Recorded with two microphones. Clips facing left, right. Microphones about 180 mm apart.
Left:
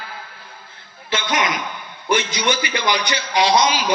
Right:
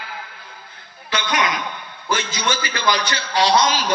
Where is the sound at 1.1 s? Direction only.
25° left (ahead or behind).